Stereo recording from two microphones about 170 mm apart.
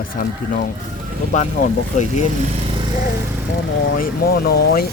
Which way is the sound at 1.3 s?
45° left (ahead or behind).